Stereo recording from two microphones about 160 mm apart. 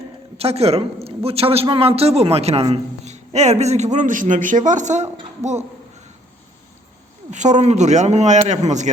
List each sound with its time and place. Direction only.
0.3 s a man's voice: 40° right (ahead or behind)
7.3 s a man's voice: 50° right (ahead or behind)